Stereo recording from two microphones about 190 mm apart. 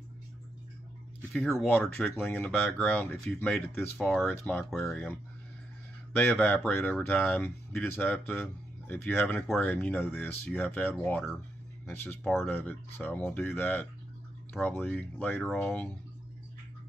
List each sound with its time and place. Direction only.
1.3 s speech: 5° left (ahead or behind)